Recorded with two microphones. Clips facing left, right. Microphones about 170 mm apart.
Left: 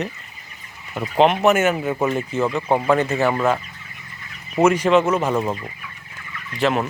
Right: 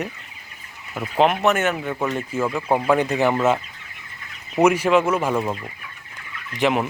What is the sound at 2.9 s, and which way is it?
Speech, 15° right (ahead or behind).